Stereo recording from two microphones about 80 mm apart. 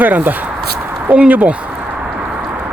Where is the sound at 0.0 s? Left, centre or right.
Right.